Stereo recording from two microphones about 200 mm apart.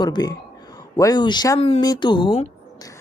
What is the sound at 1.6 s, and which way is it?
A woman's voice, 30° left (ahead or behind).